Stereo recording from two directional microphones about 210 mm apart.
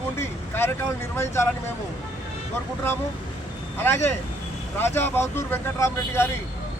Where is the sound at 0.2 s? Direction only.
10° left (ahead or behind).